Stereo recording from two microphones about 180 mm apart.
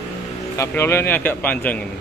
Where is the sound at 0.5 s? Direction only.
15° left (ahead or behind).